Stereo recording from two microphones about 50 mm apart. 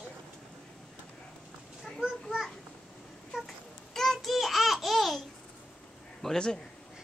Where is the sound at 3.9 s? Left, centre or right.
Centre.